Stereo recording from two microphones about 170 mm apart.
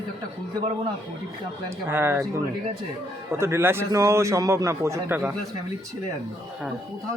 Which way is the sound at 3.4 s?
15° right (ahead or behind).